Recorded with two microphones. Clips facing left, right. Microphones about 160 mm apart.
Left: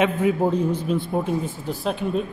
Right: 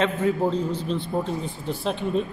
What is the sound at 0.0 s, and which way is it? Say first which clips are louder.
Speech: left 2 dB; 10° left (ahead or behind).